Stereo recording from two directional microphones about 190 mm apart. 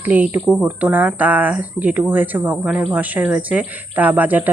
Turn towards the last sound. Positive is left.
turn(degrees=-10)  # may be behind; listen again after turning